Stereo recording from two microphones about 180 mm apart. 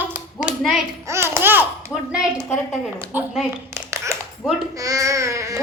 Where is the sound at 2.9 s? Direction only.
15° right (ahead or behind).